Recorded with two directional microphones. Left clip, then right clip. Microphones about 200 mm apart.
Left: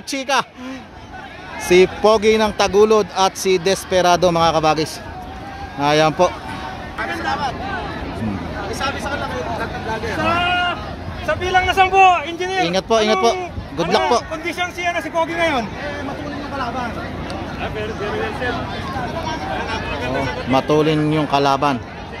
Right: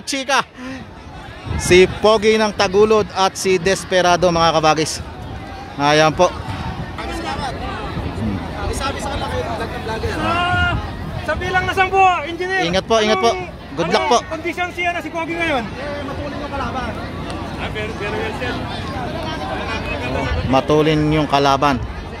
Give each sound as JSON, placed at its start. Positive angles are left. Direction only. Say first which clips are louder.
{"t": 0.1, "sound": "speech", "louder": "right 1 dB", "side_deg": 0}
{"t": 1.7, "sound": "speech", "louder": "right 1 dB", "side_deg": 0}
{"t": 7.2, "sound": "a sound", "louder": "left 4 dB", "side_deg": -10}
{"t": 8.7, "sound": "speech", "louder": "left 1 dB", "side_deg": 0}
{"t": 10.2, "sound": "speech", "louder": "even", "side_deg": 15}
{"t": 11.2, "sound": "speech", "louder": "left 2 dB", "side_deg": 35}
{"t": 12.5, "sound": "speech", "louder": "right 1 dB", "side_deg": 0}
{"t": 14.4, "sound": "a man's voice", "louder": "right 1 dB", "side_deg": 50}
{"t": 20.5, "sound": "speech", "louder": "right 1 dB", "side_deg": -5}